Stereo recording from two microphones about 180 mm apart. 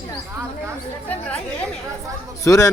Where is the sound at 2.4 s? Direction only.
15° left (ahead or behind).